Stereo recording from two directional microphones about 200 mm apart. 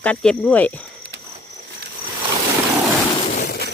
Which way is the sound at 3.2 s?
40° left (ahead or behind).